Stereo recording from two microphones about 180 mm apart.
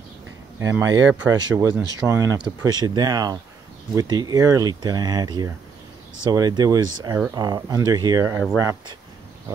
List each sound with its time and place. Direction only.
0.6 s speech: 15° right (ahead or behind)